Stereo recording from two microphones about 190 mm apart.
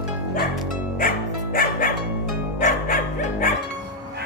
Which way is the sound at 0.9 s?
45° left (ahead or behind).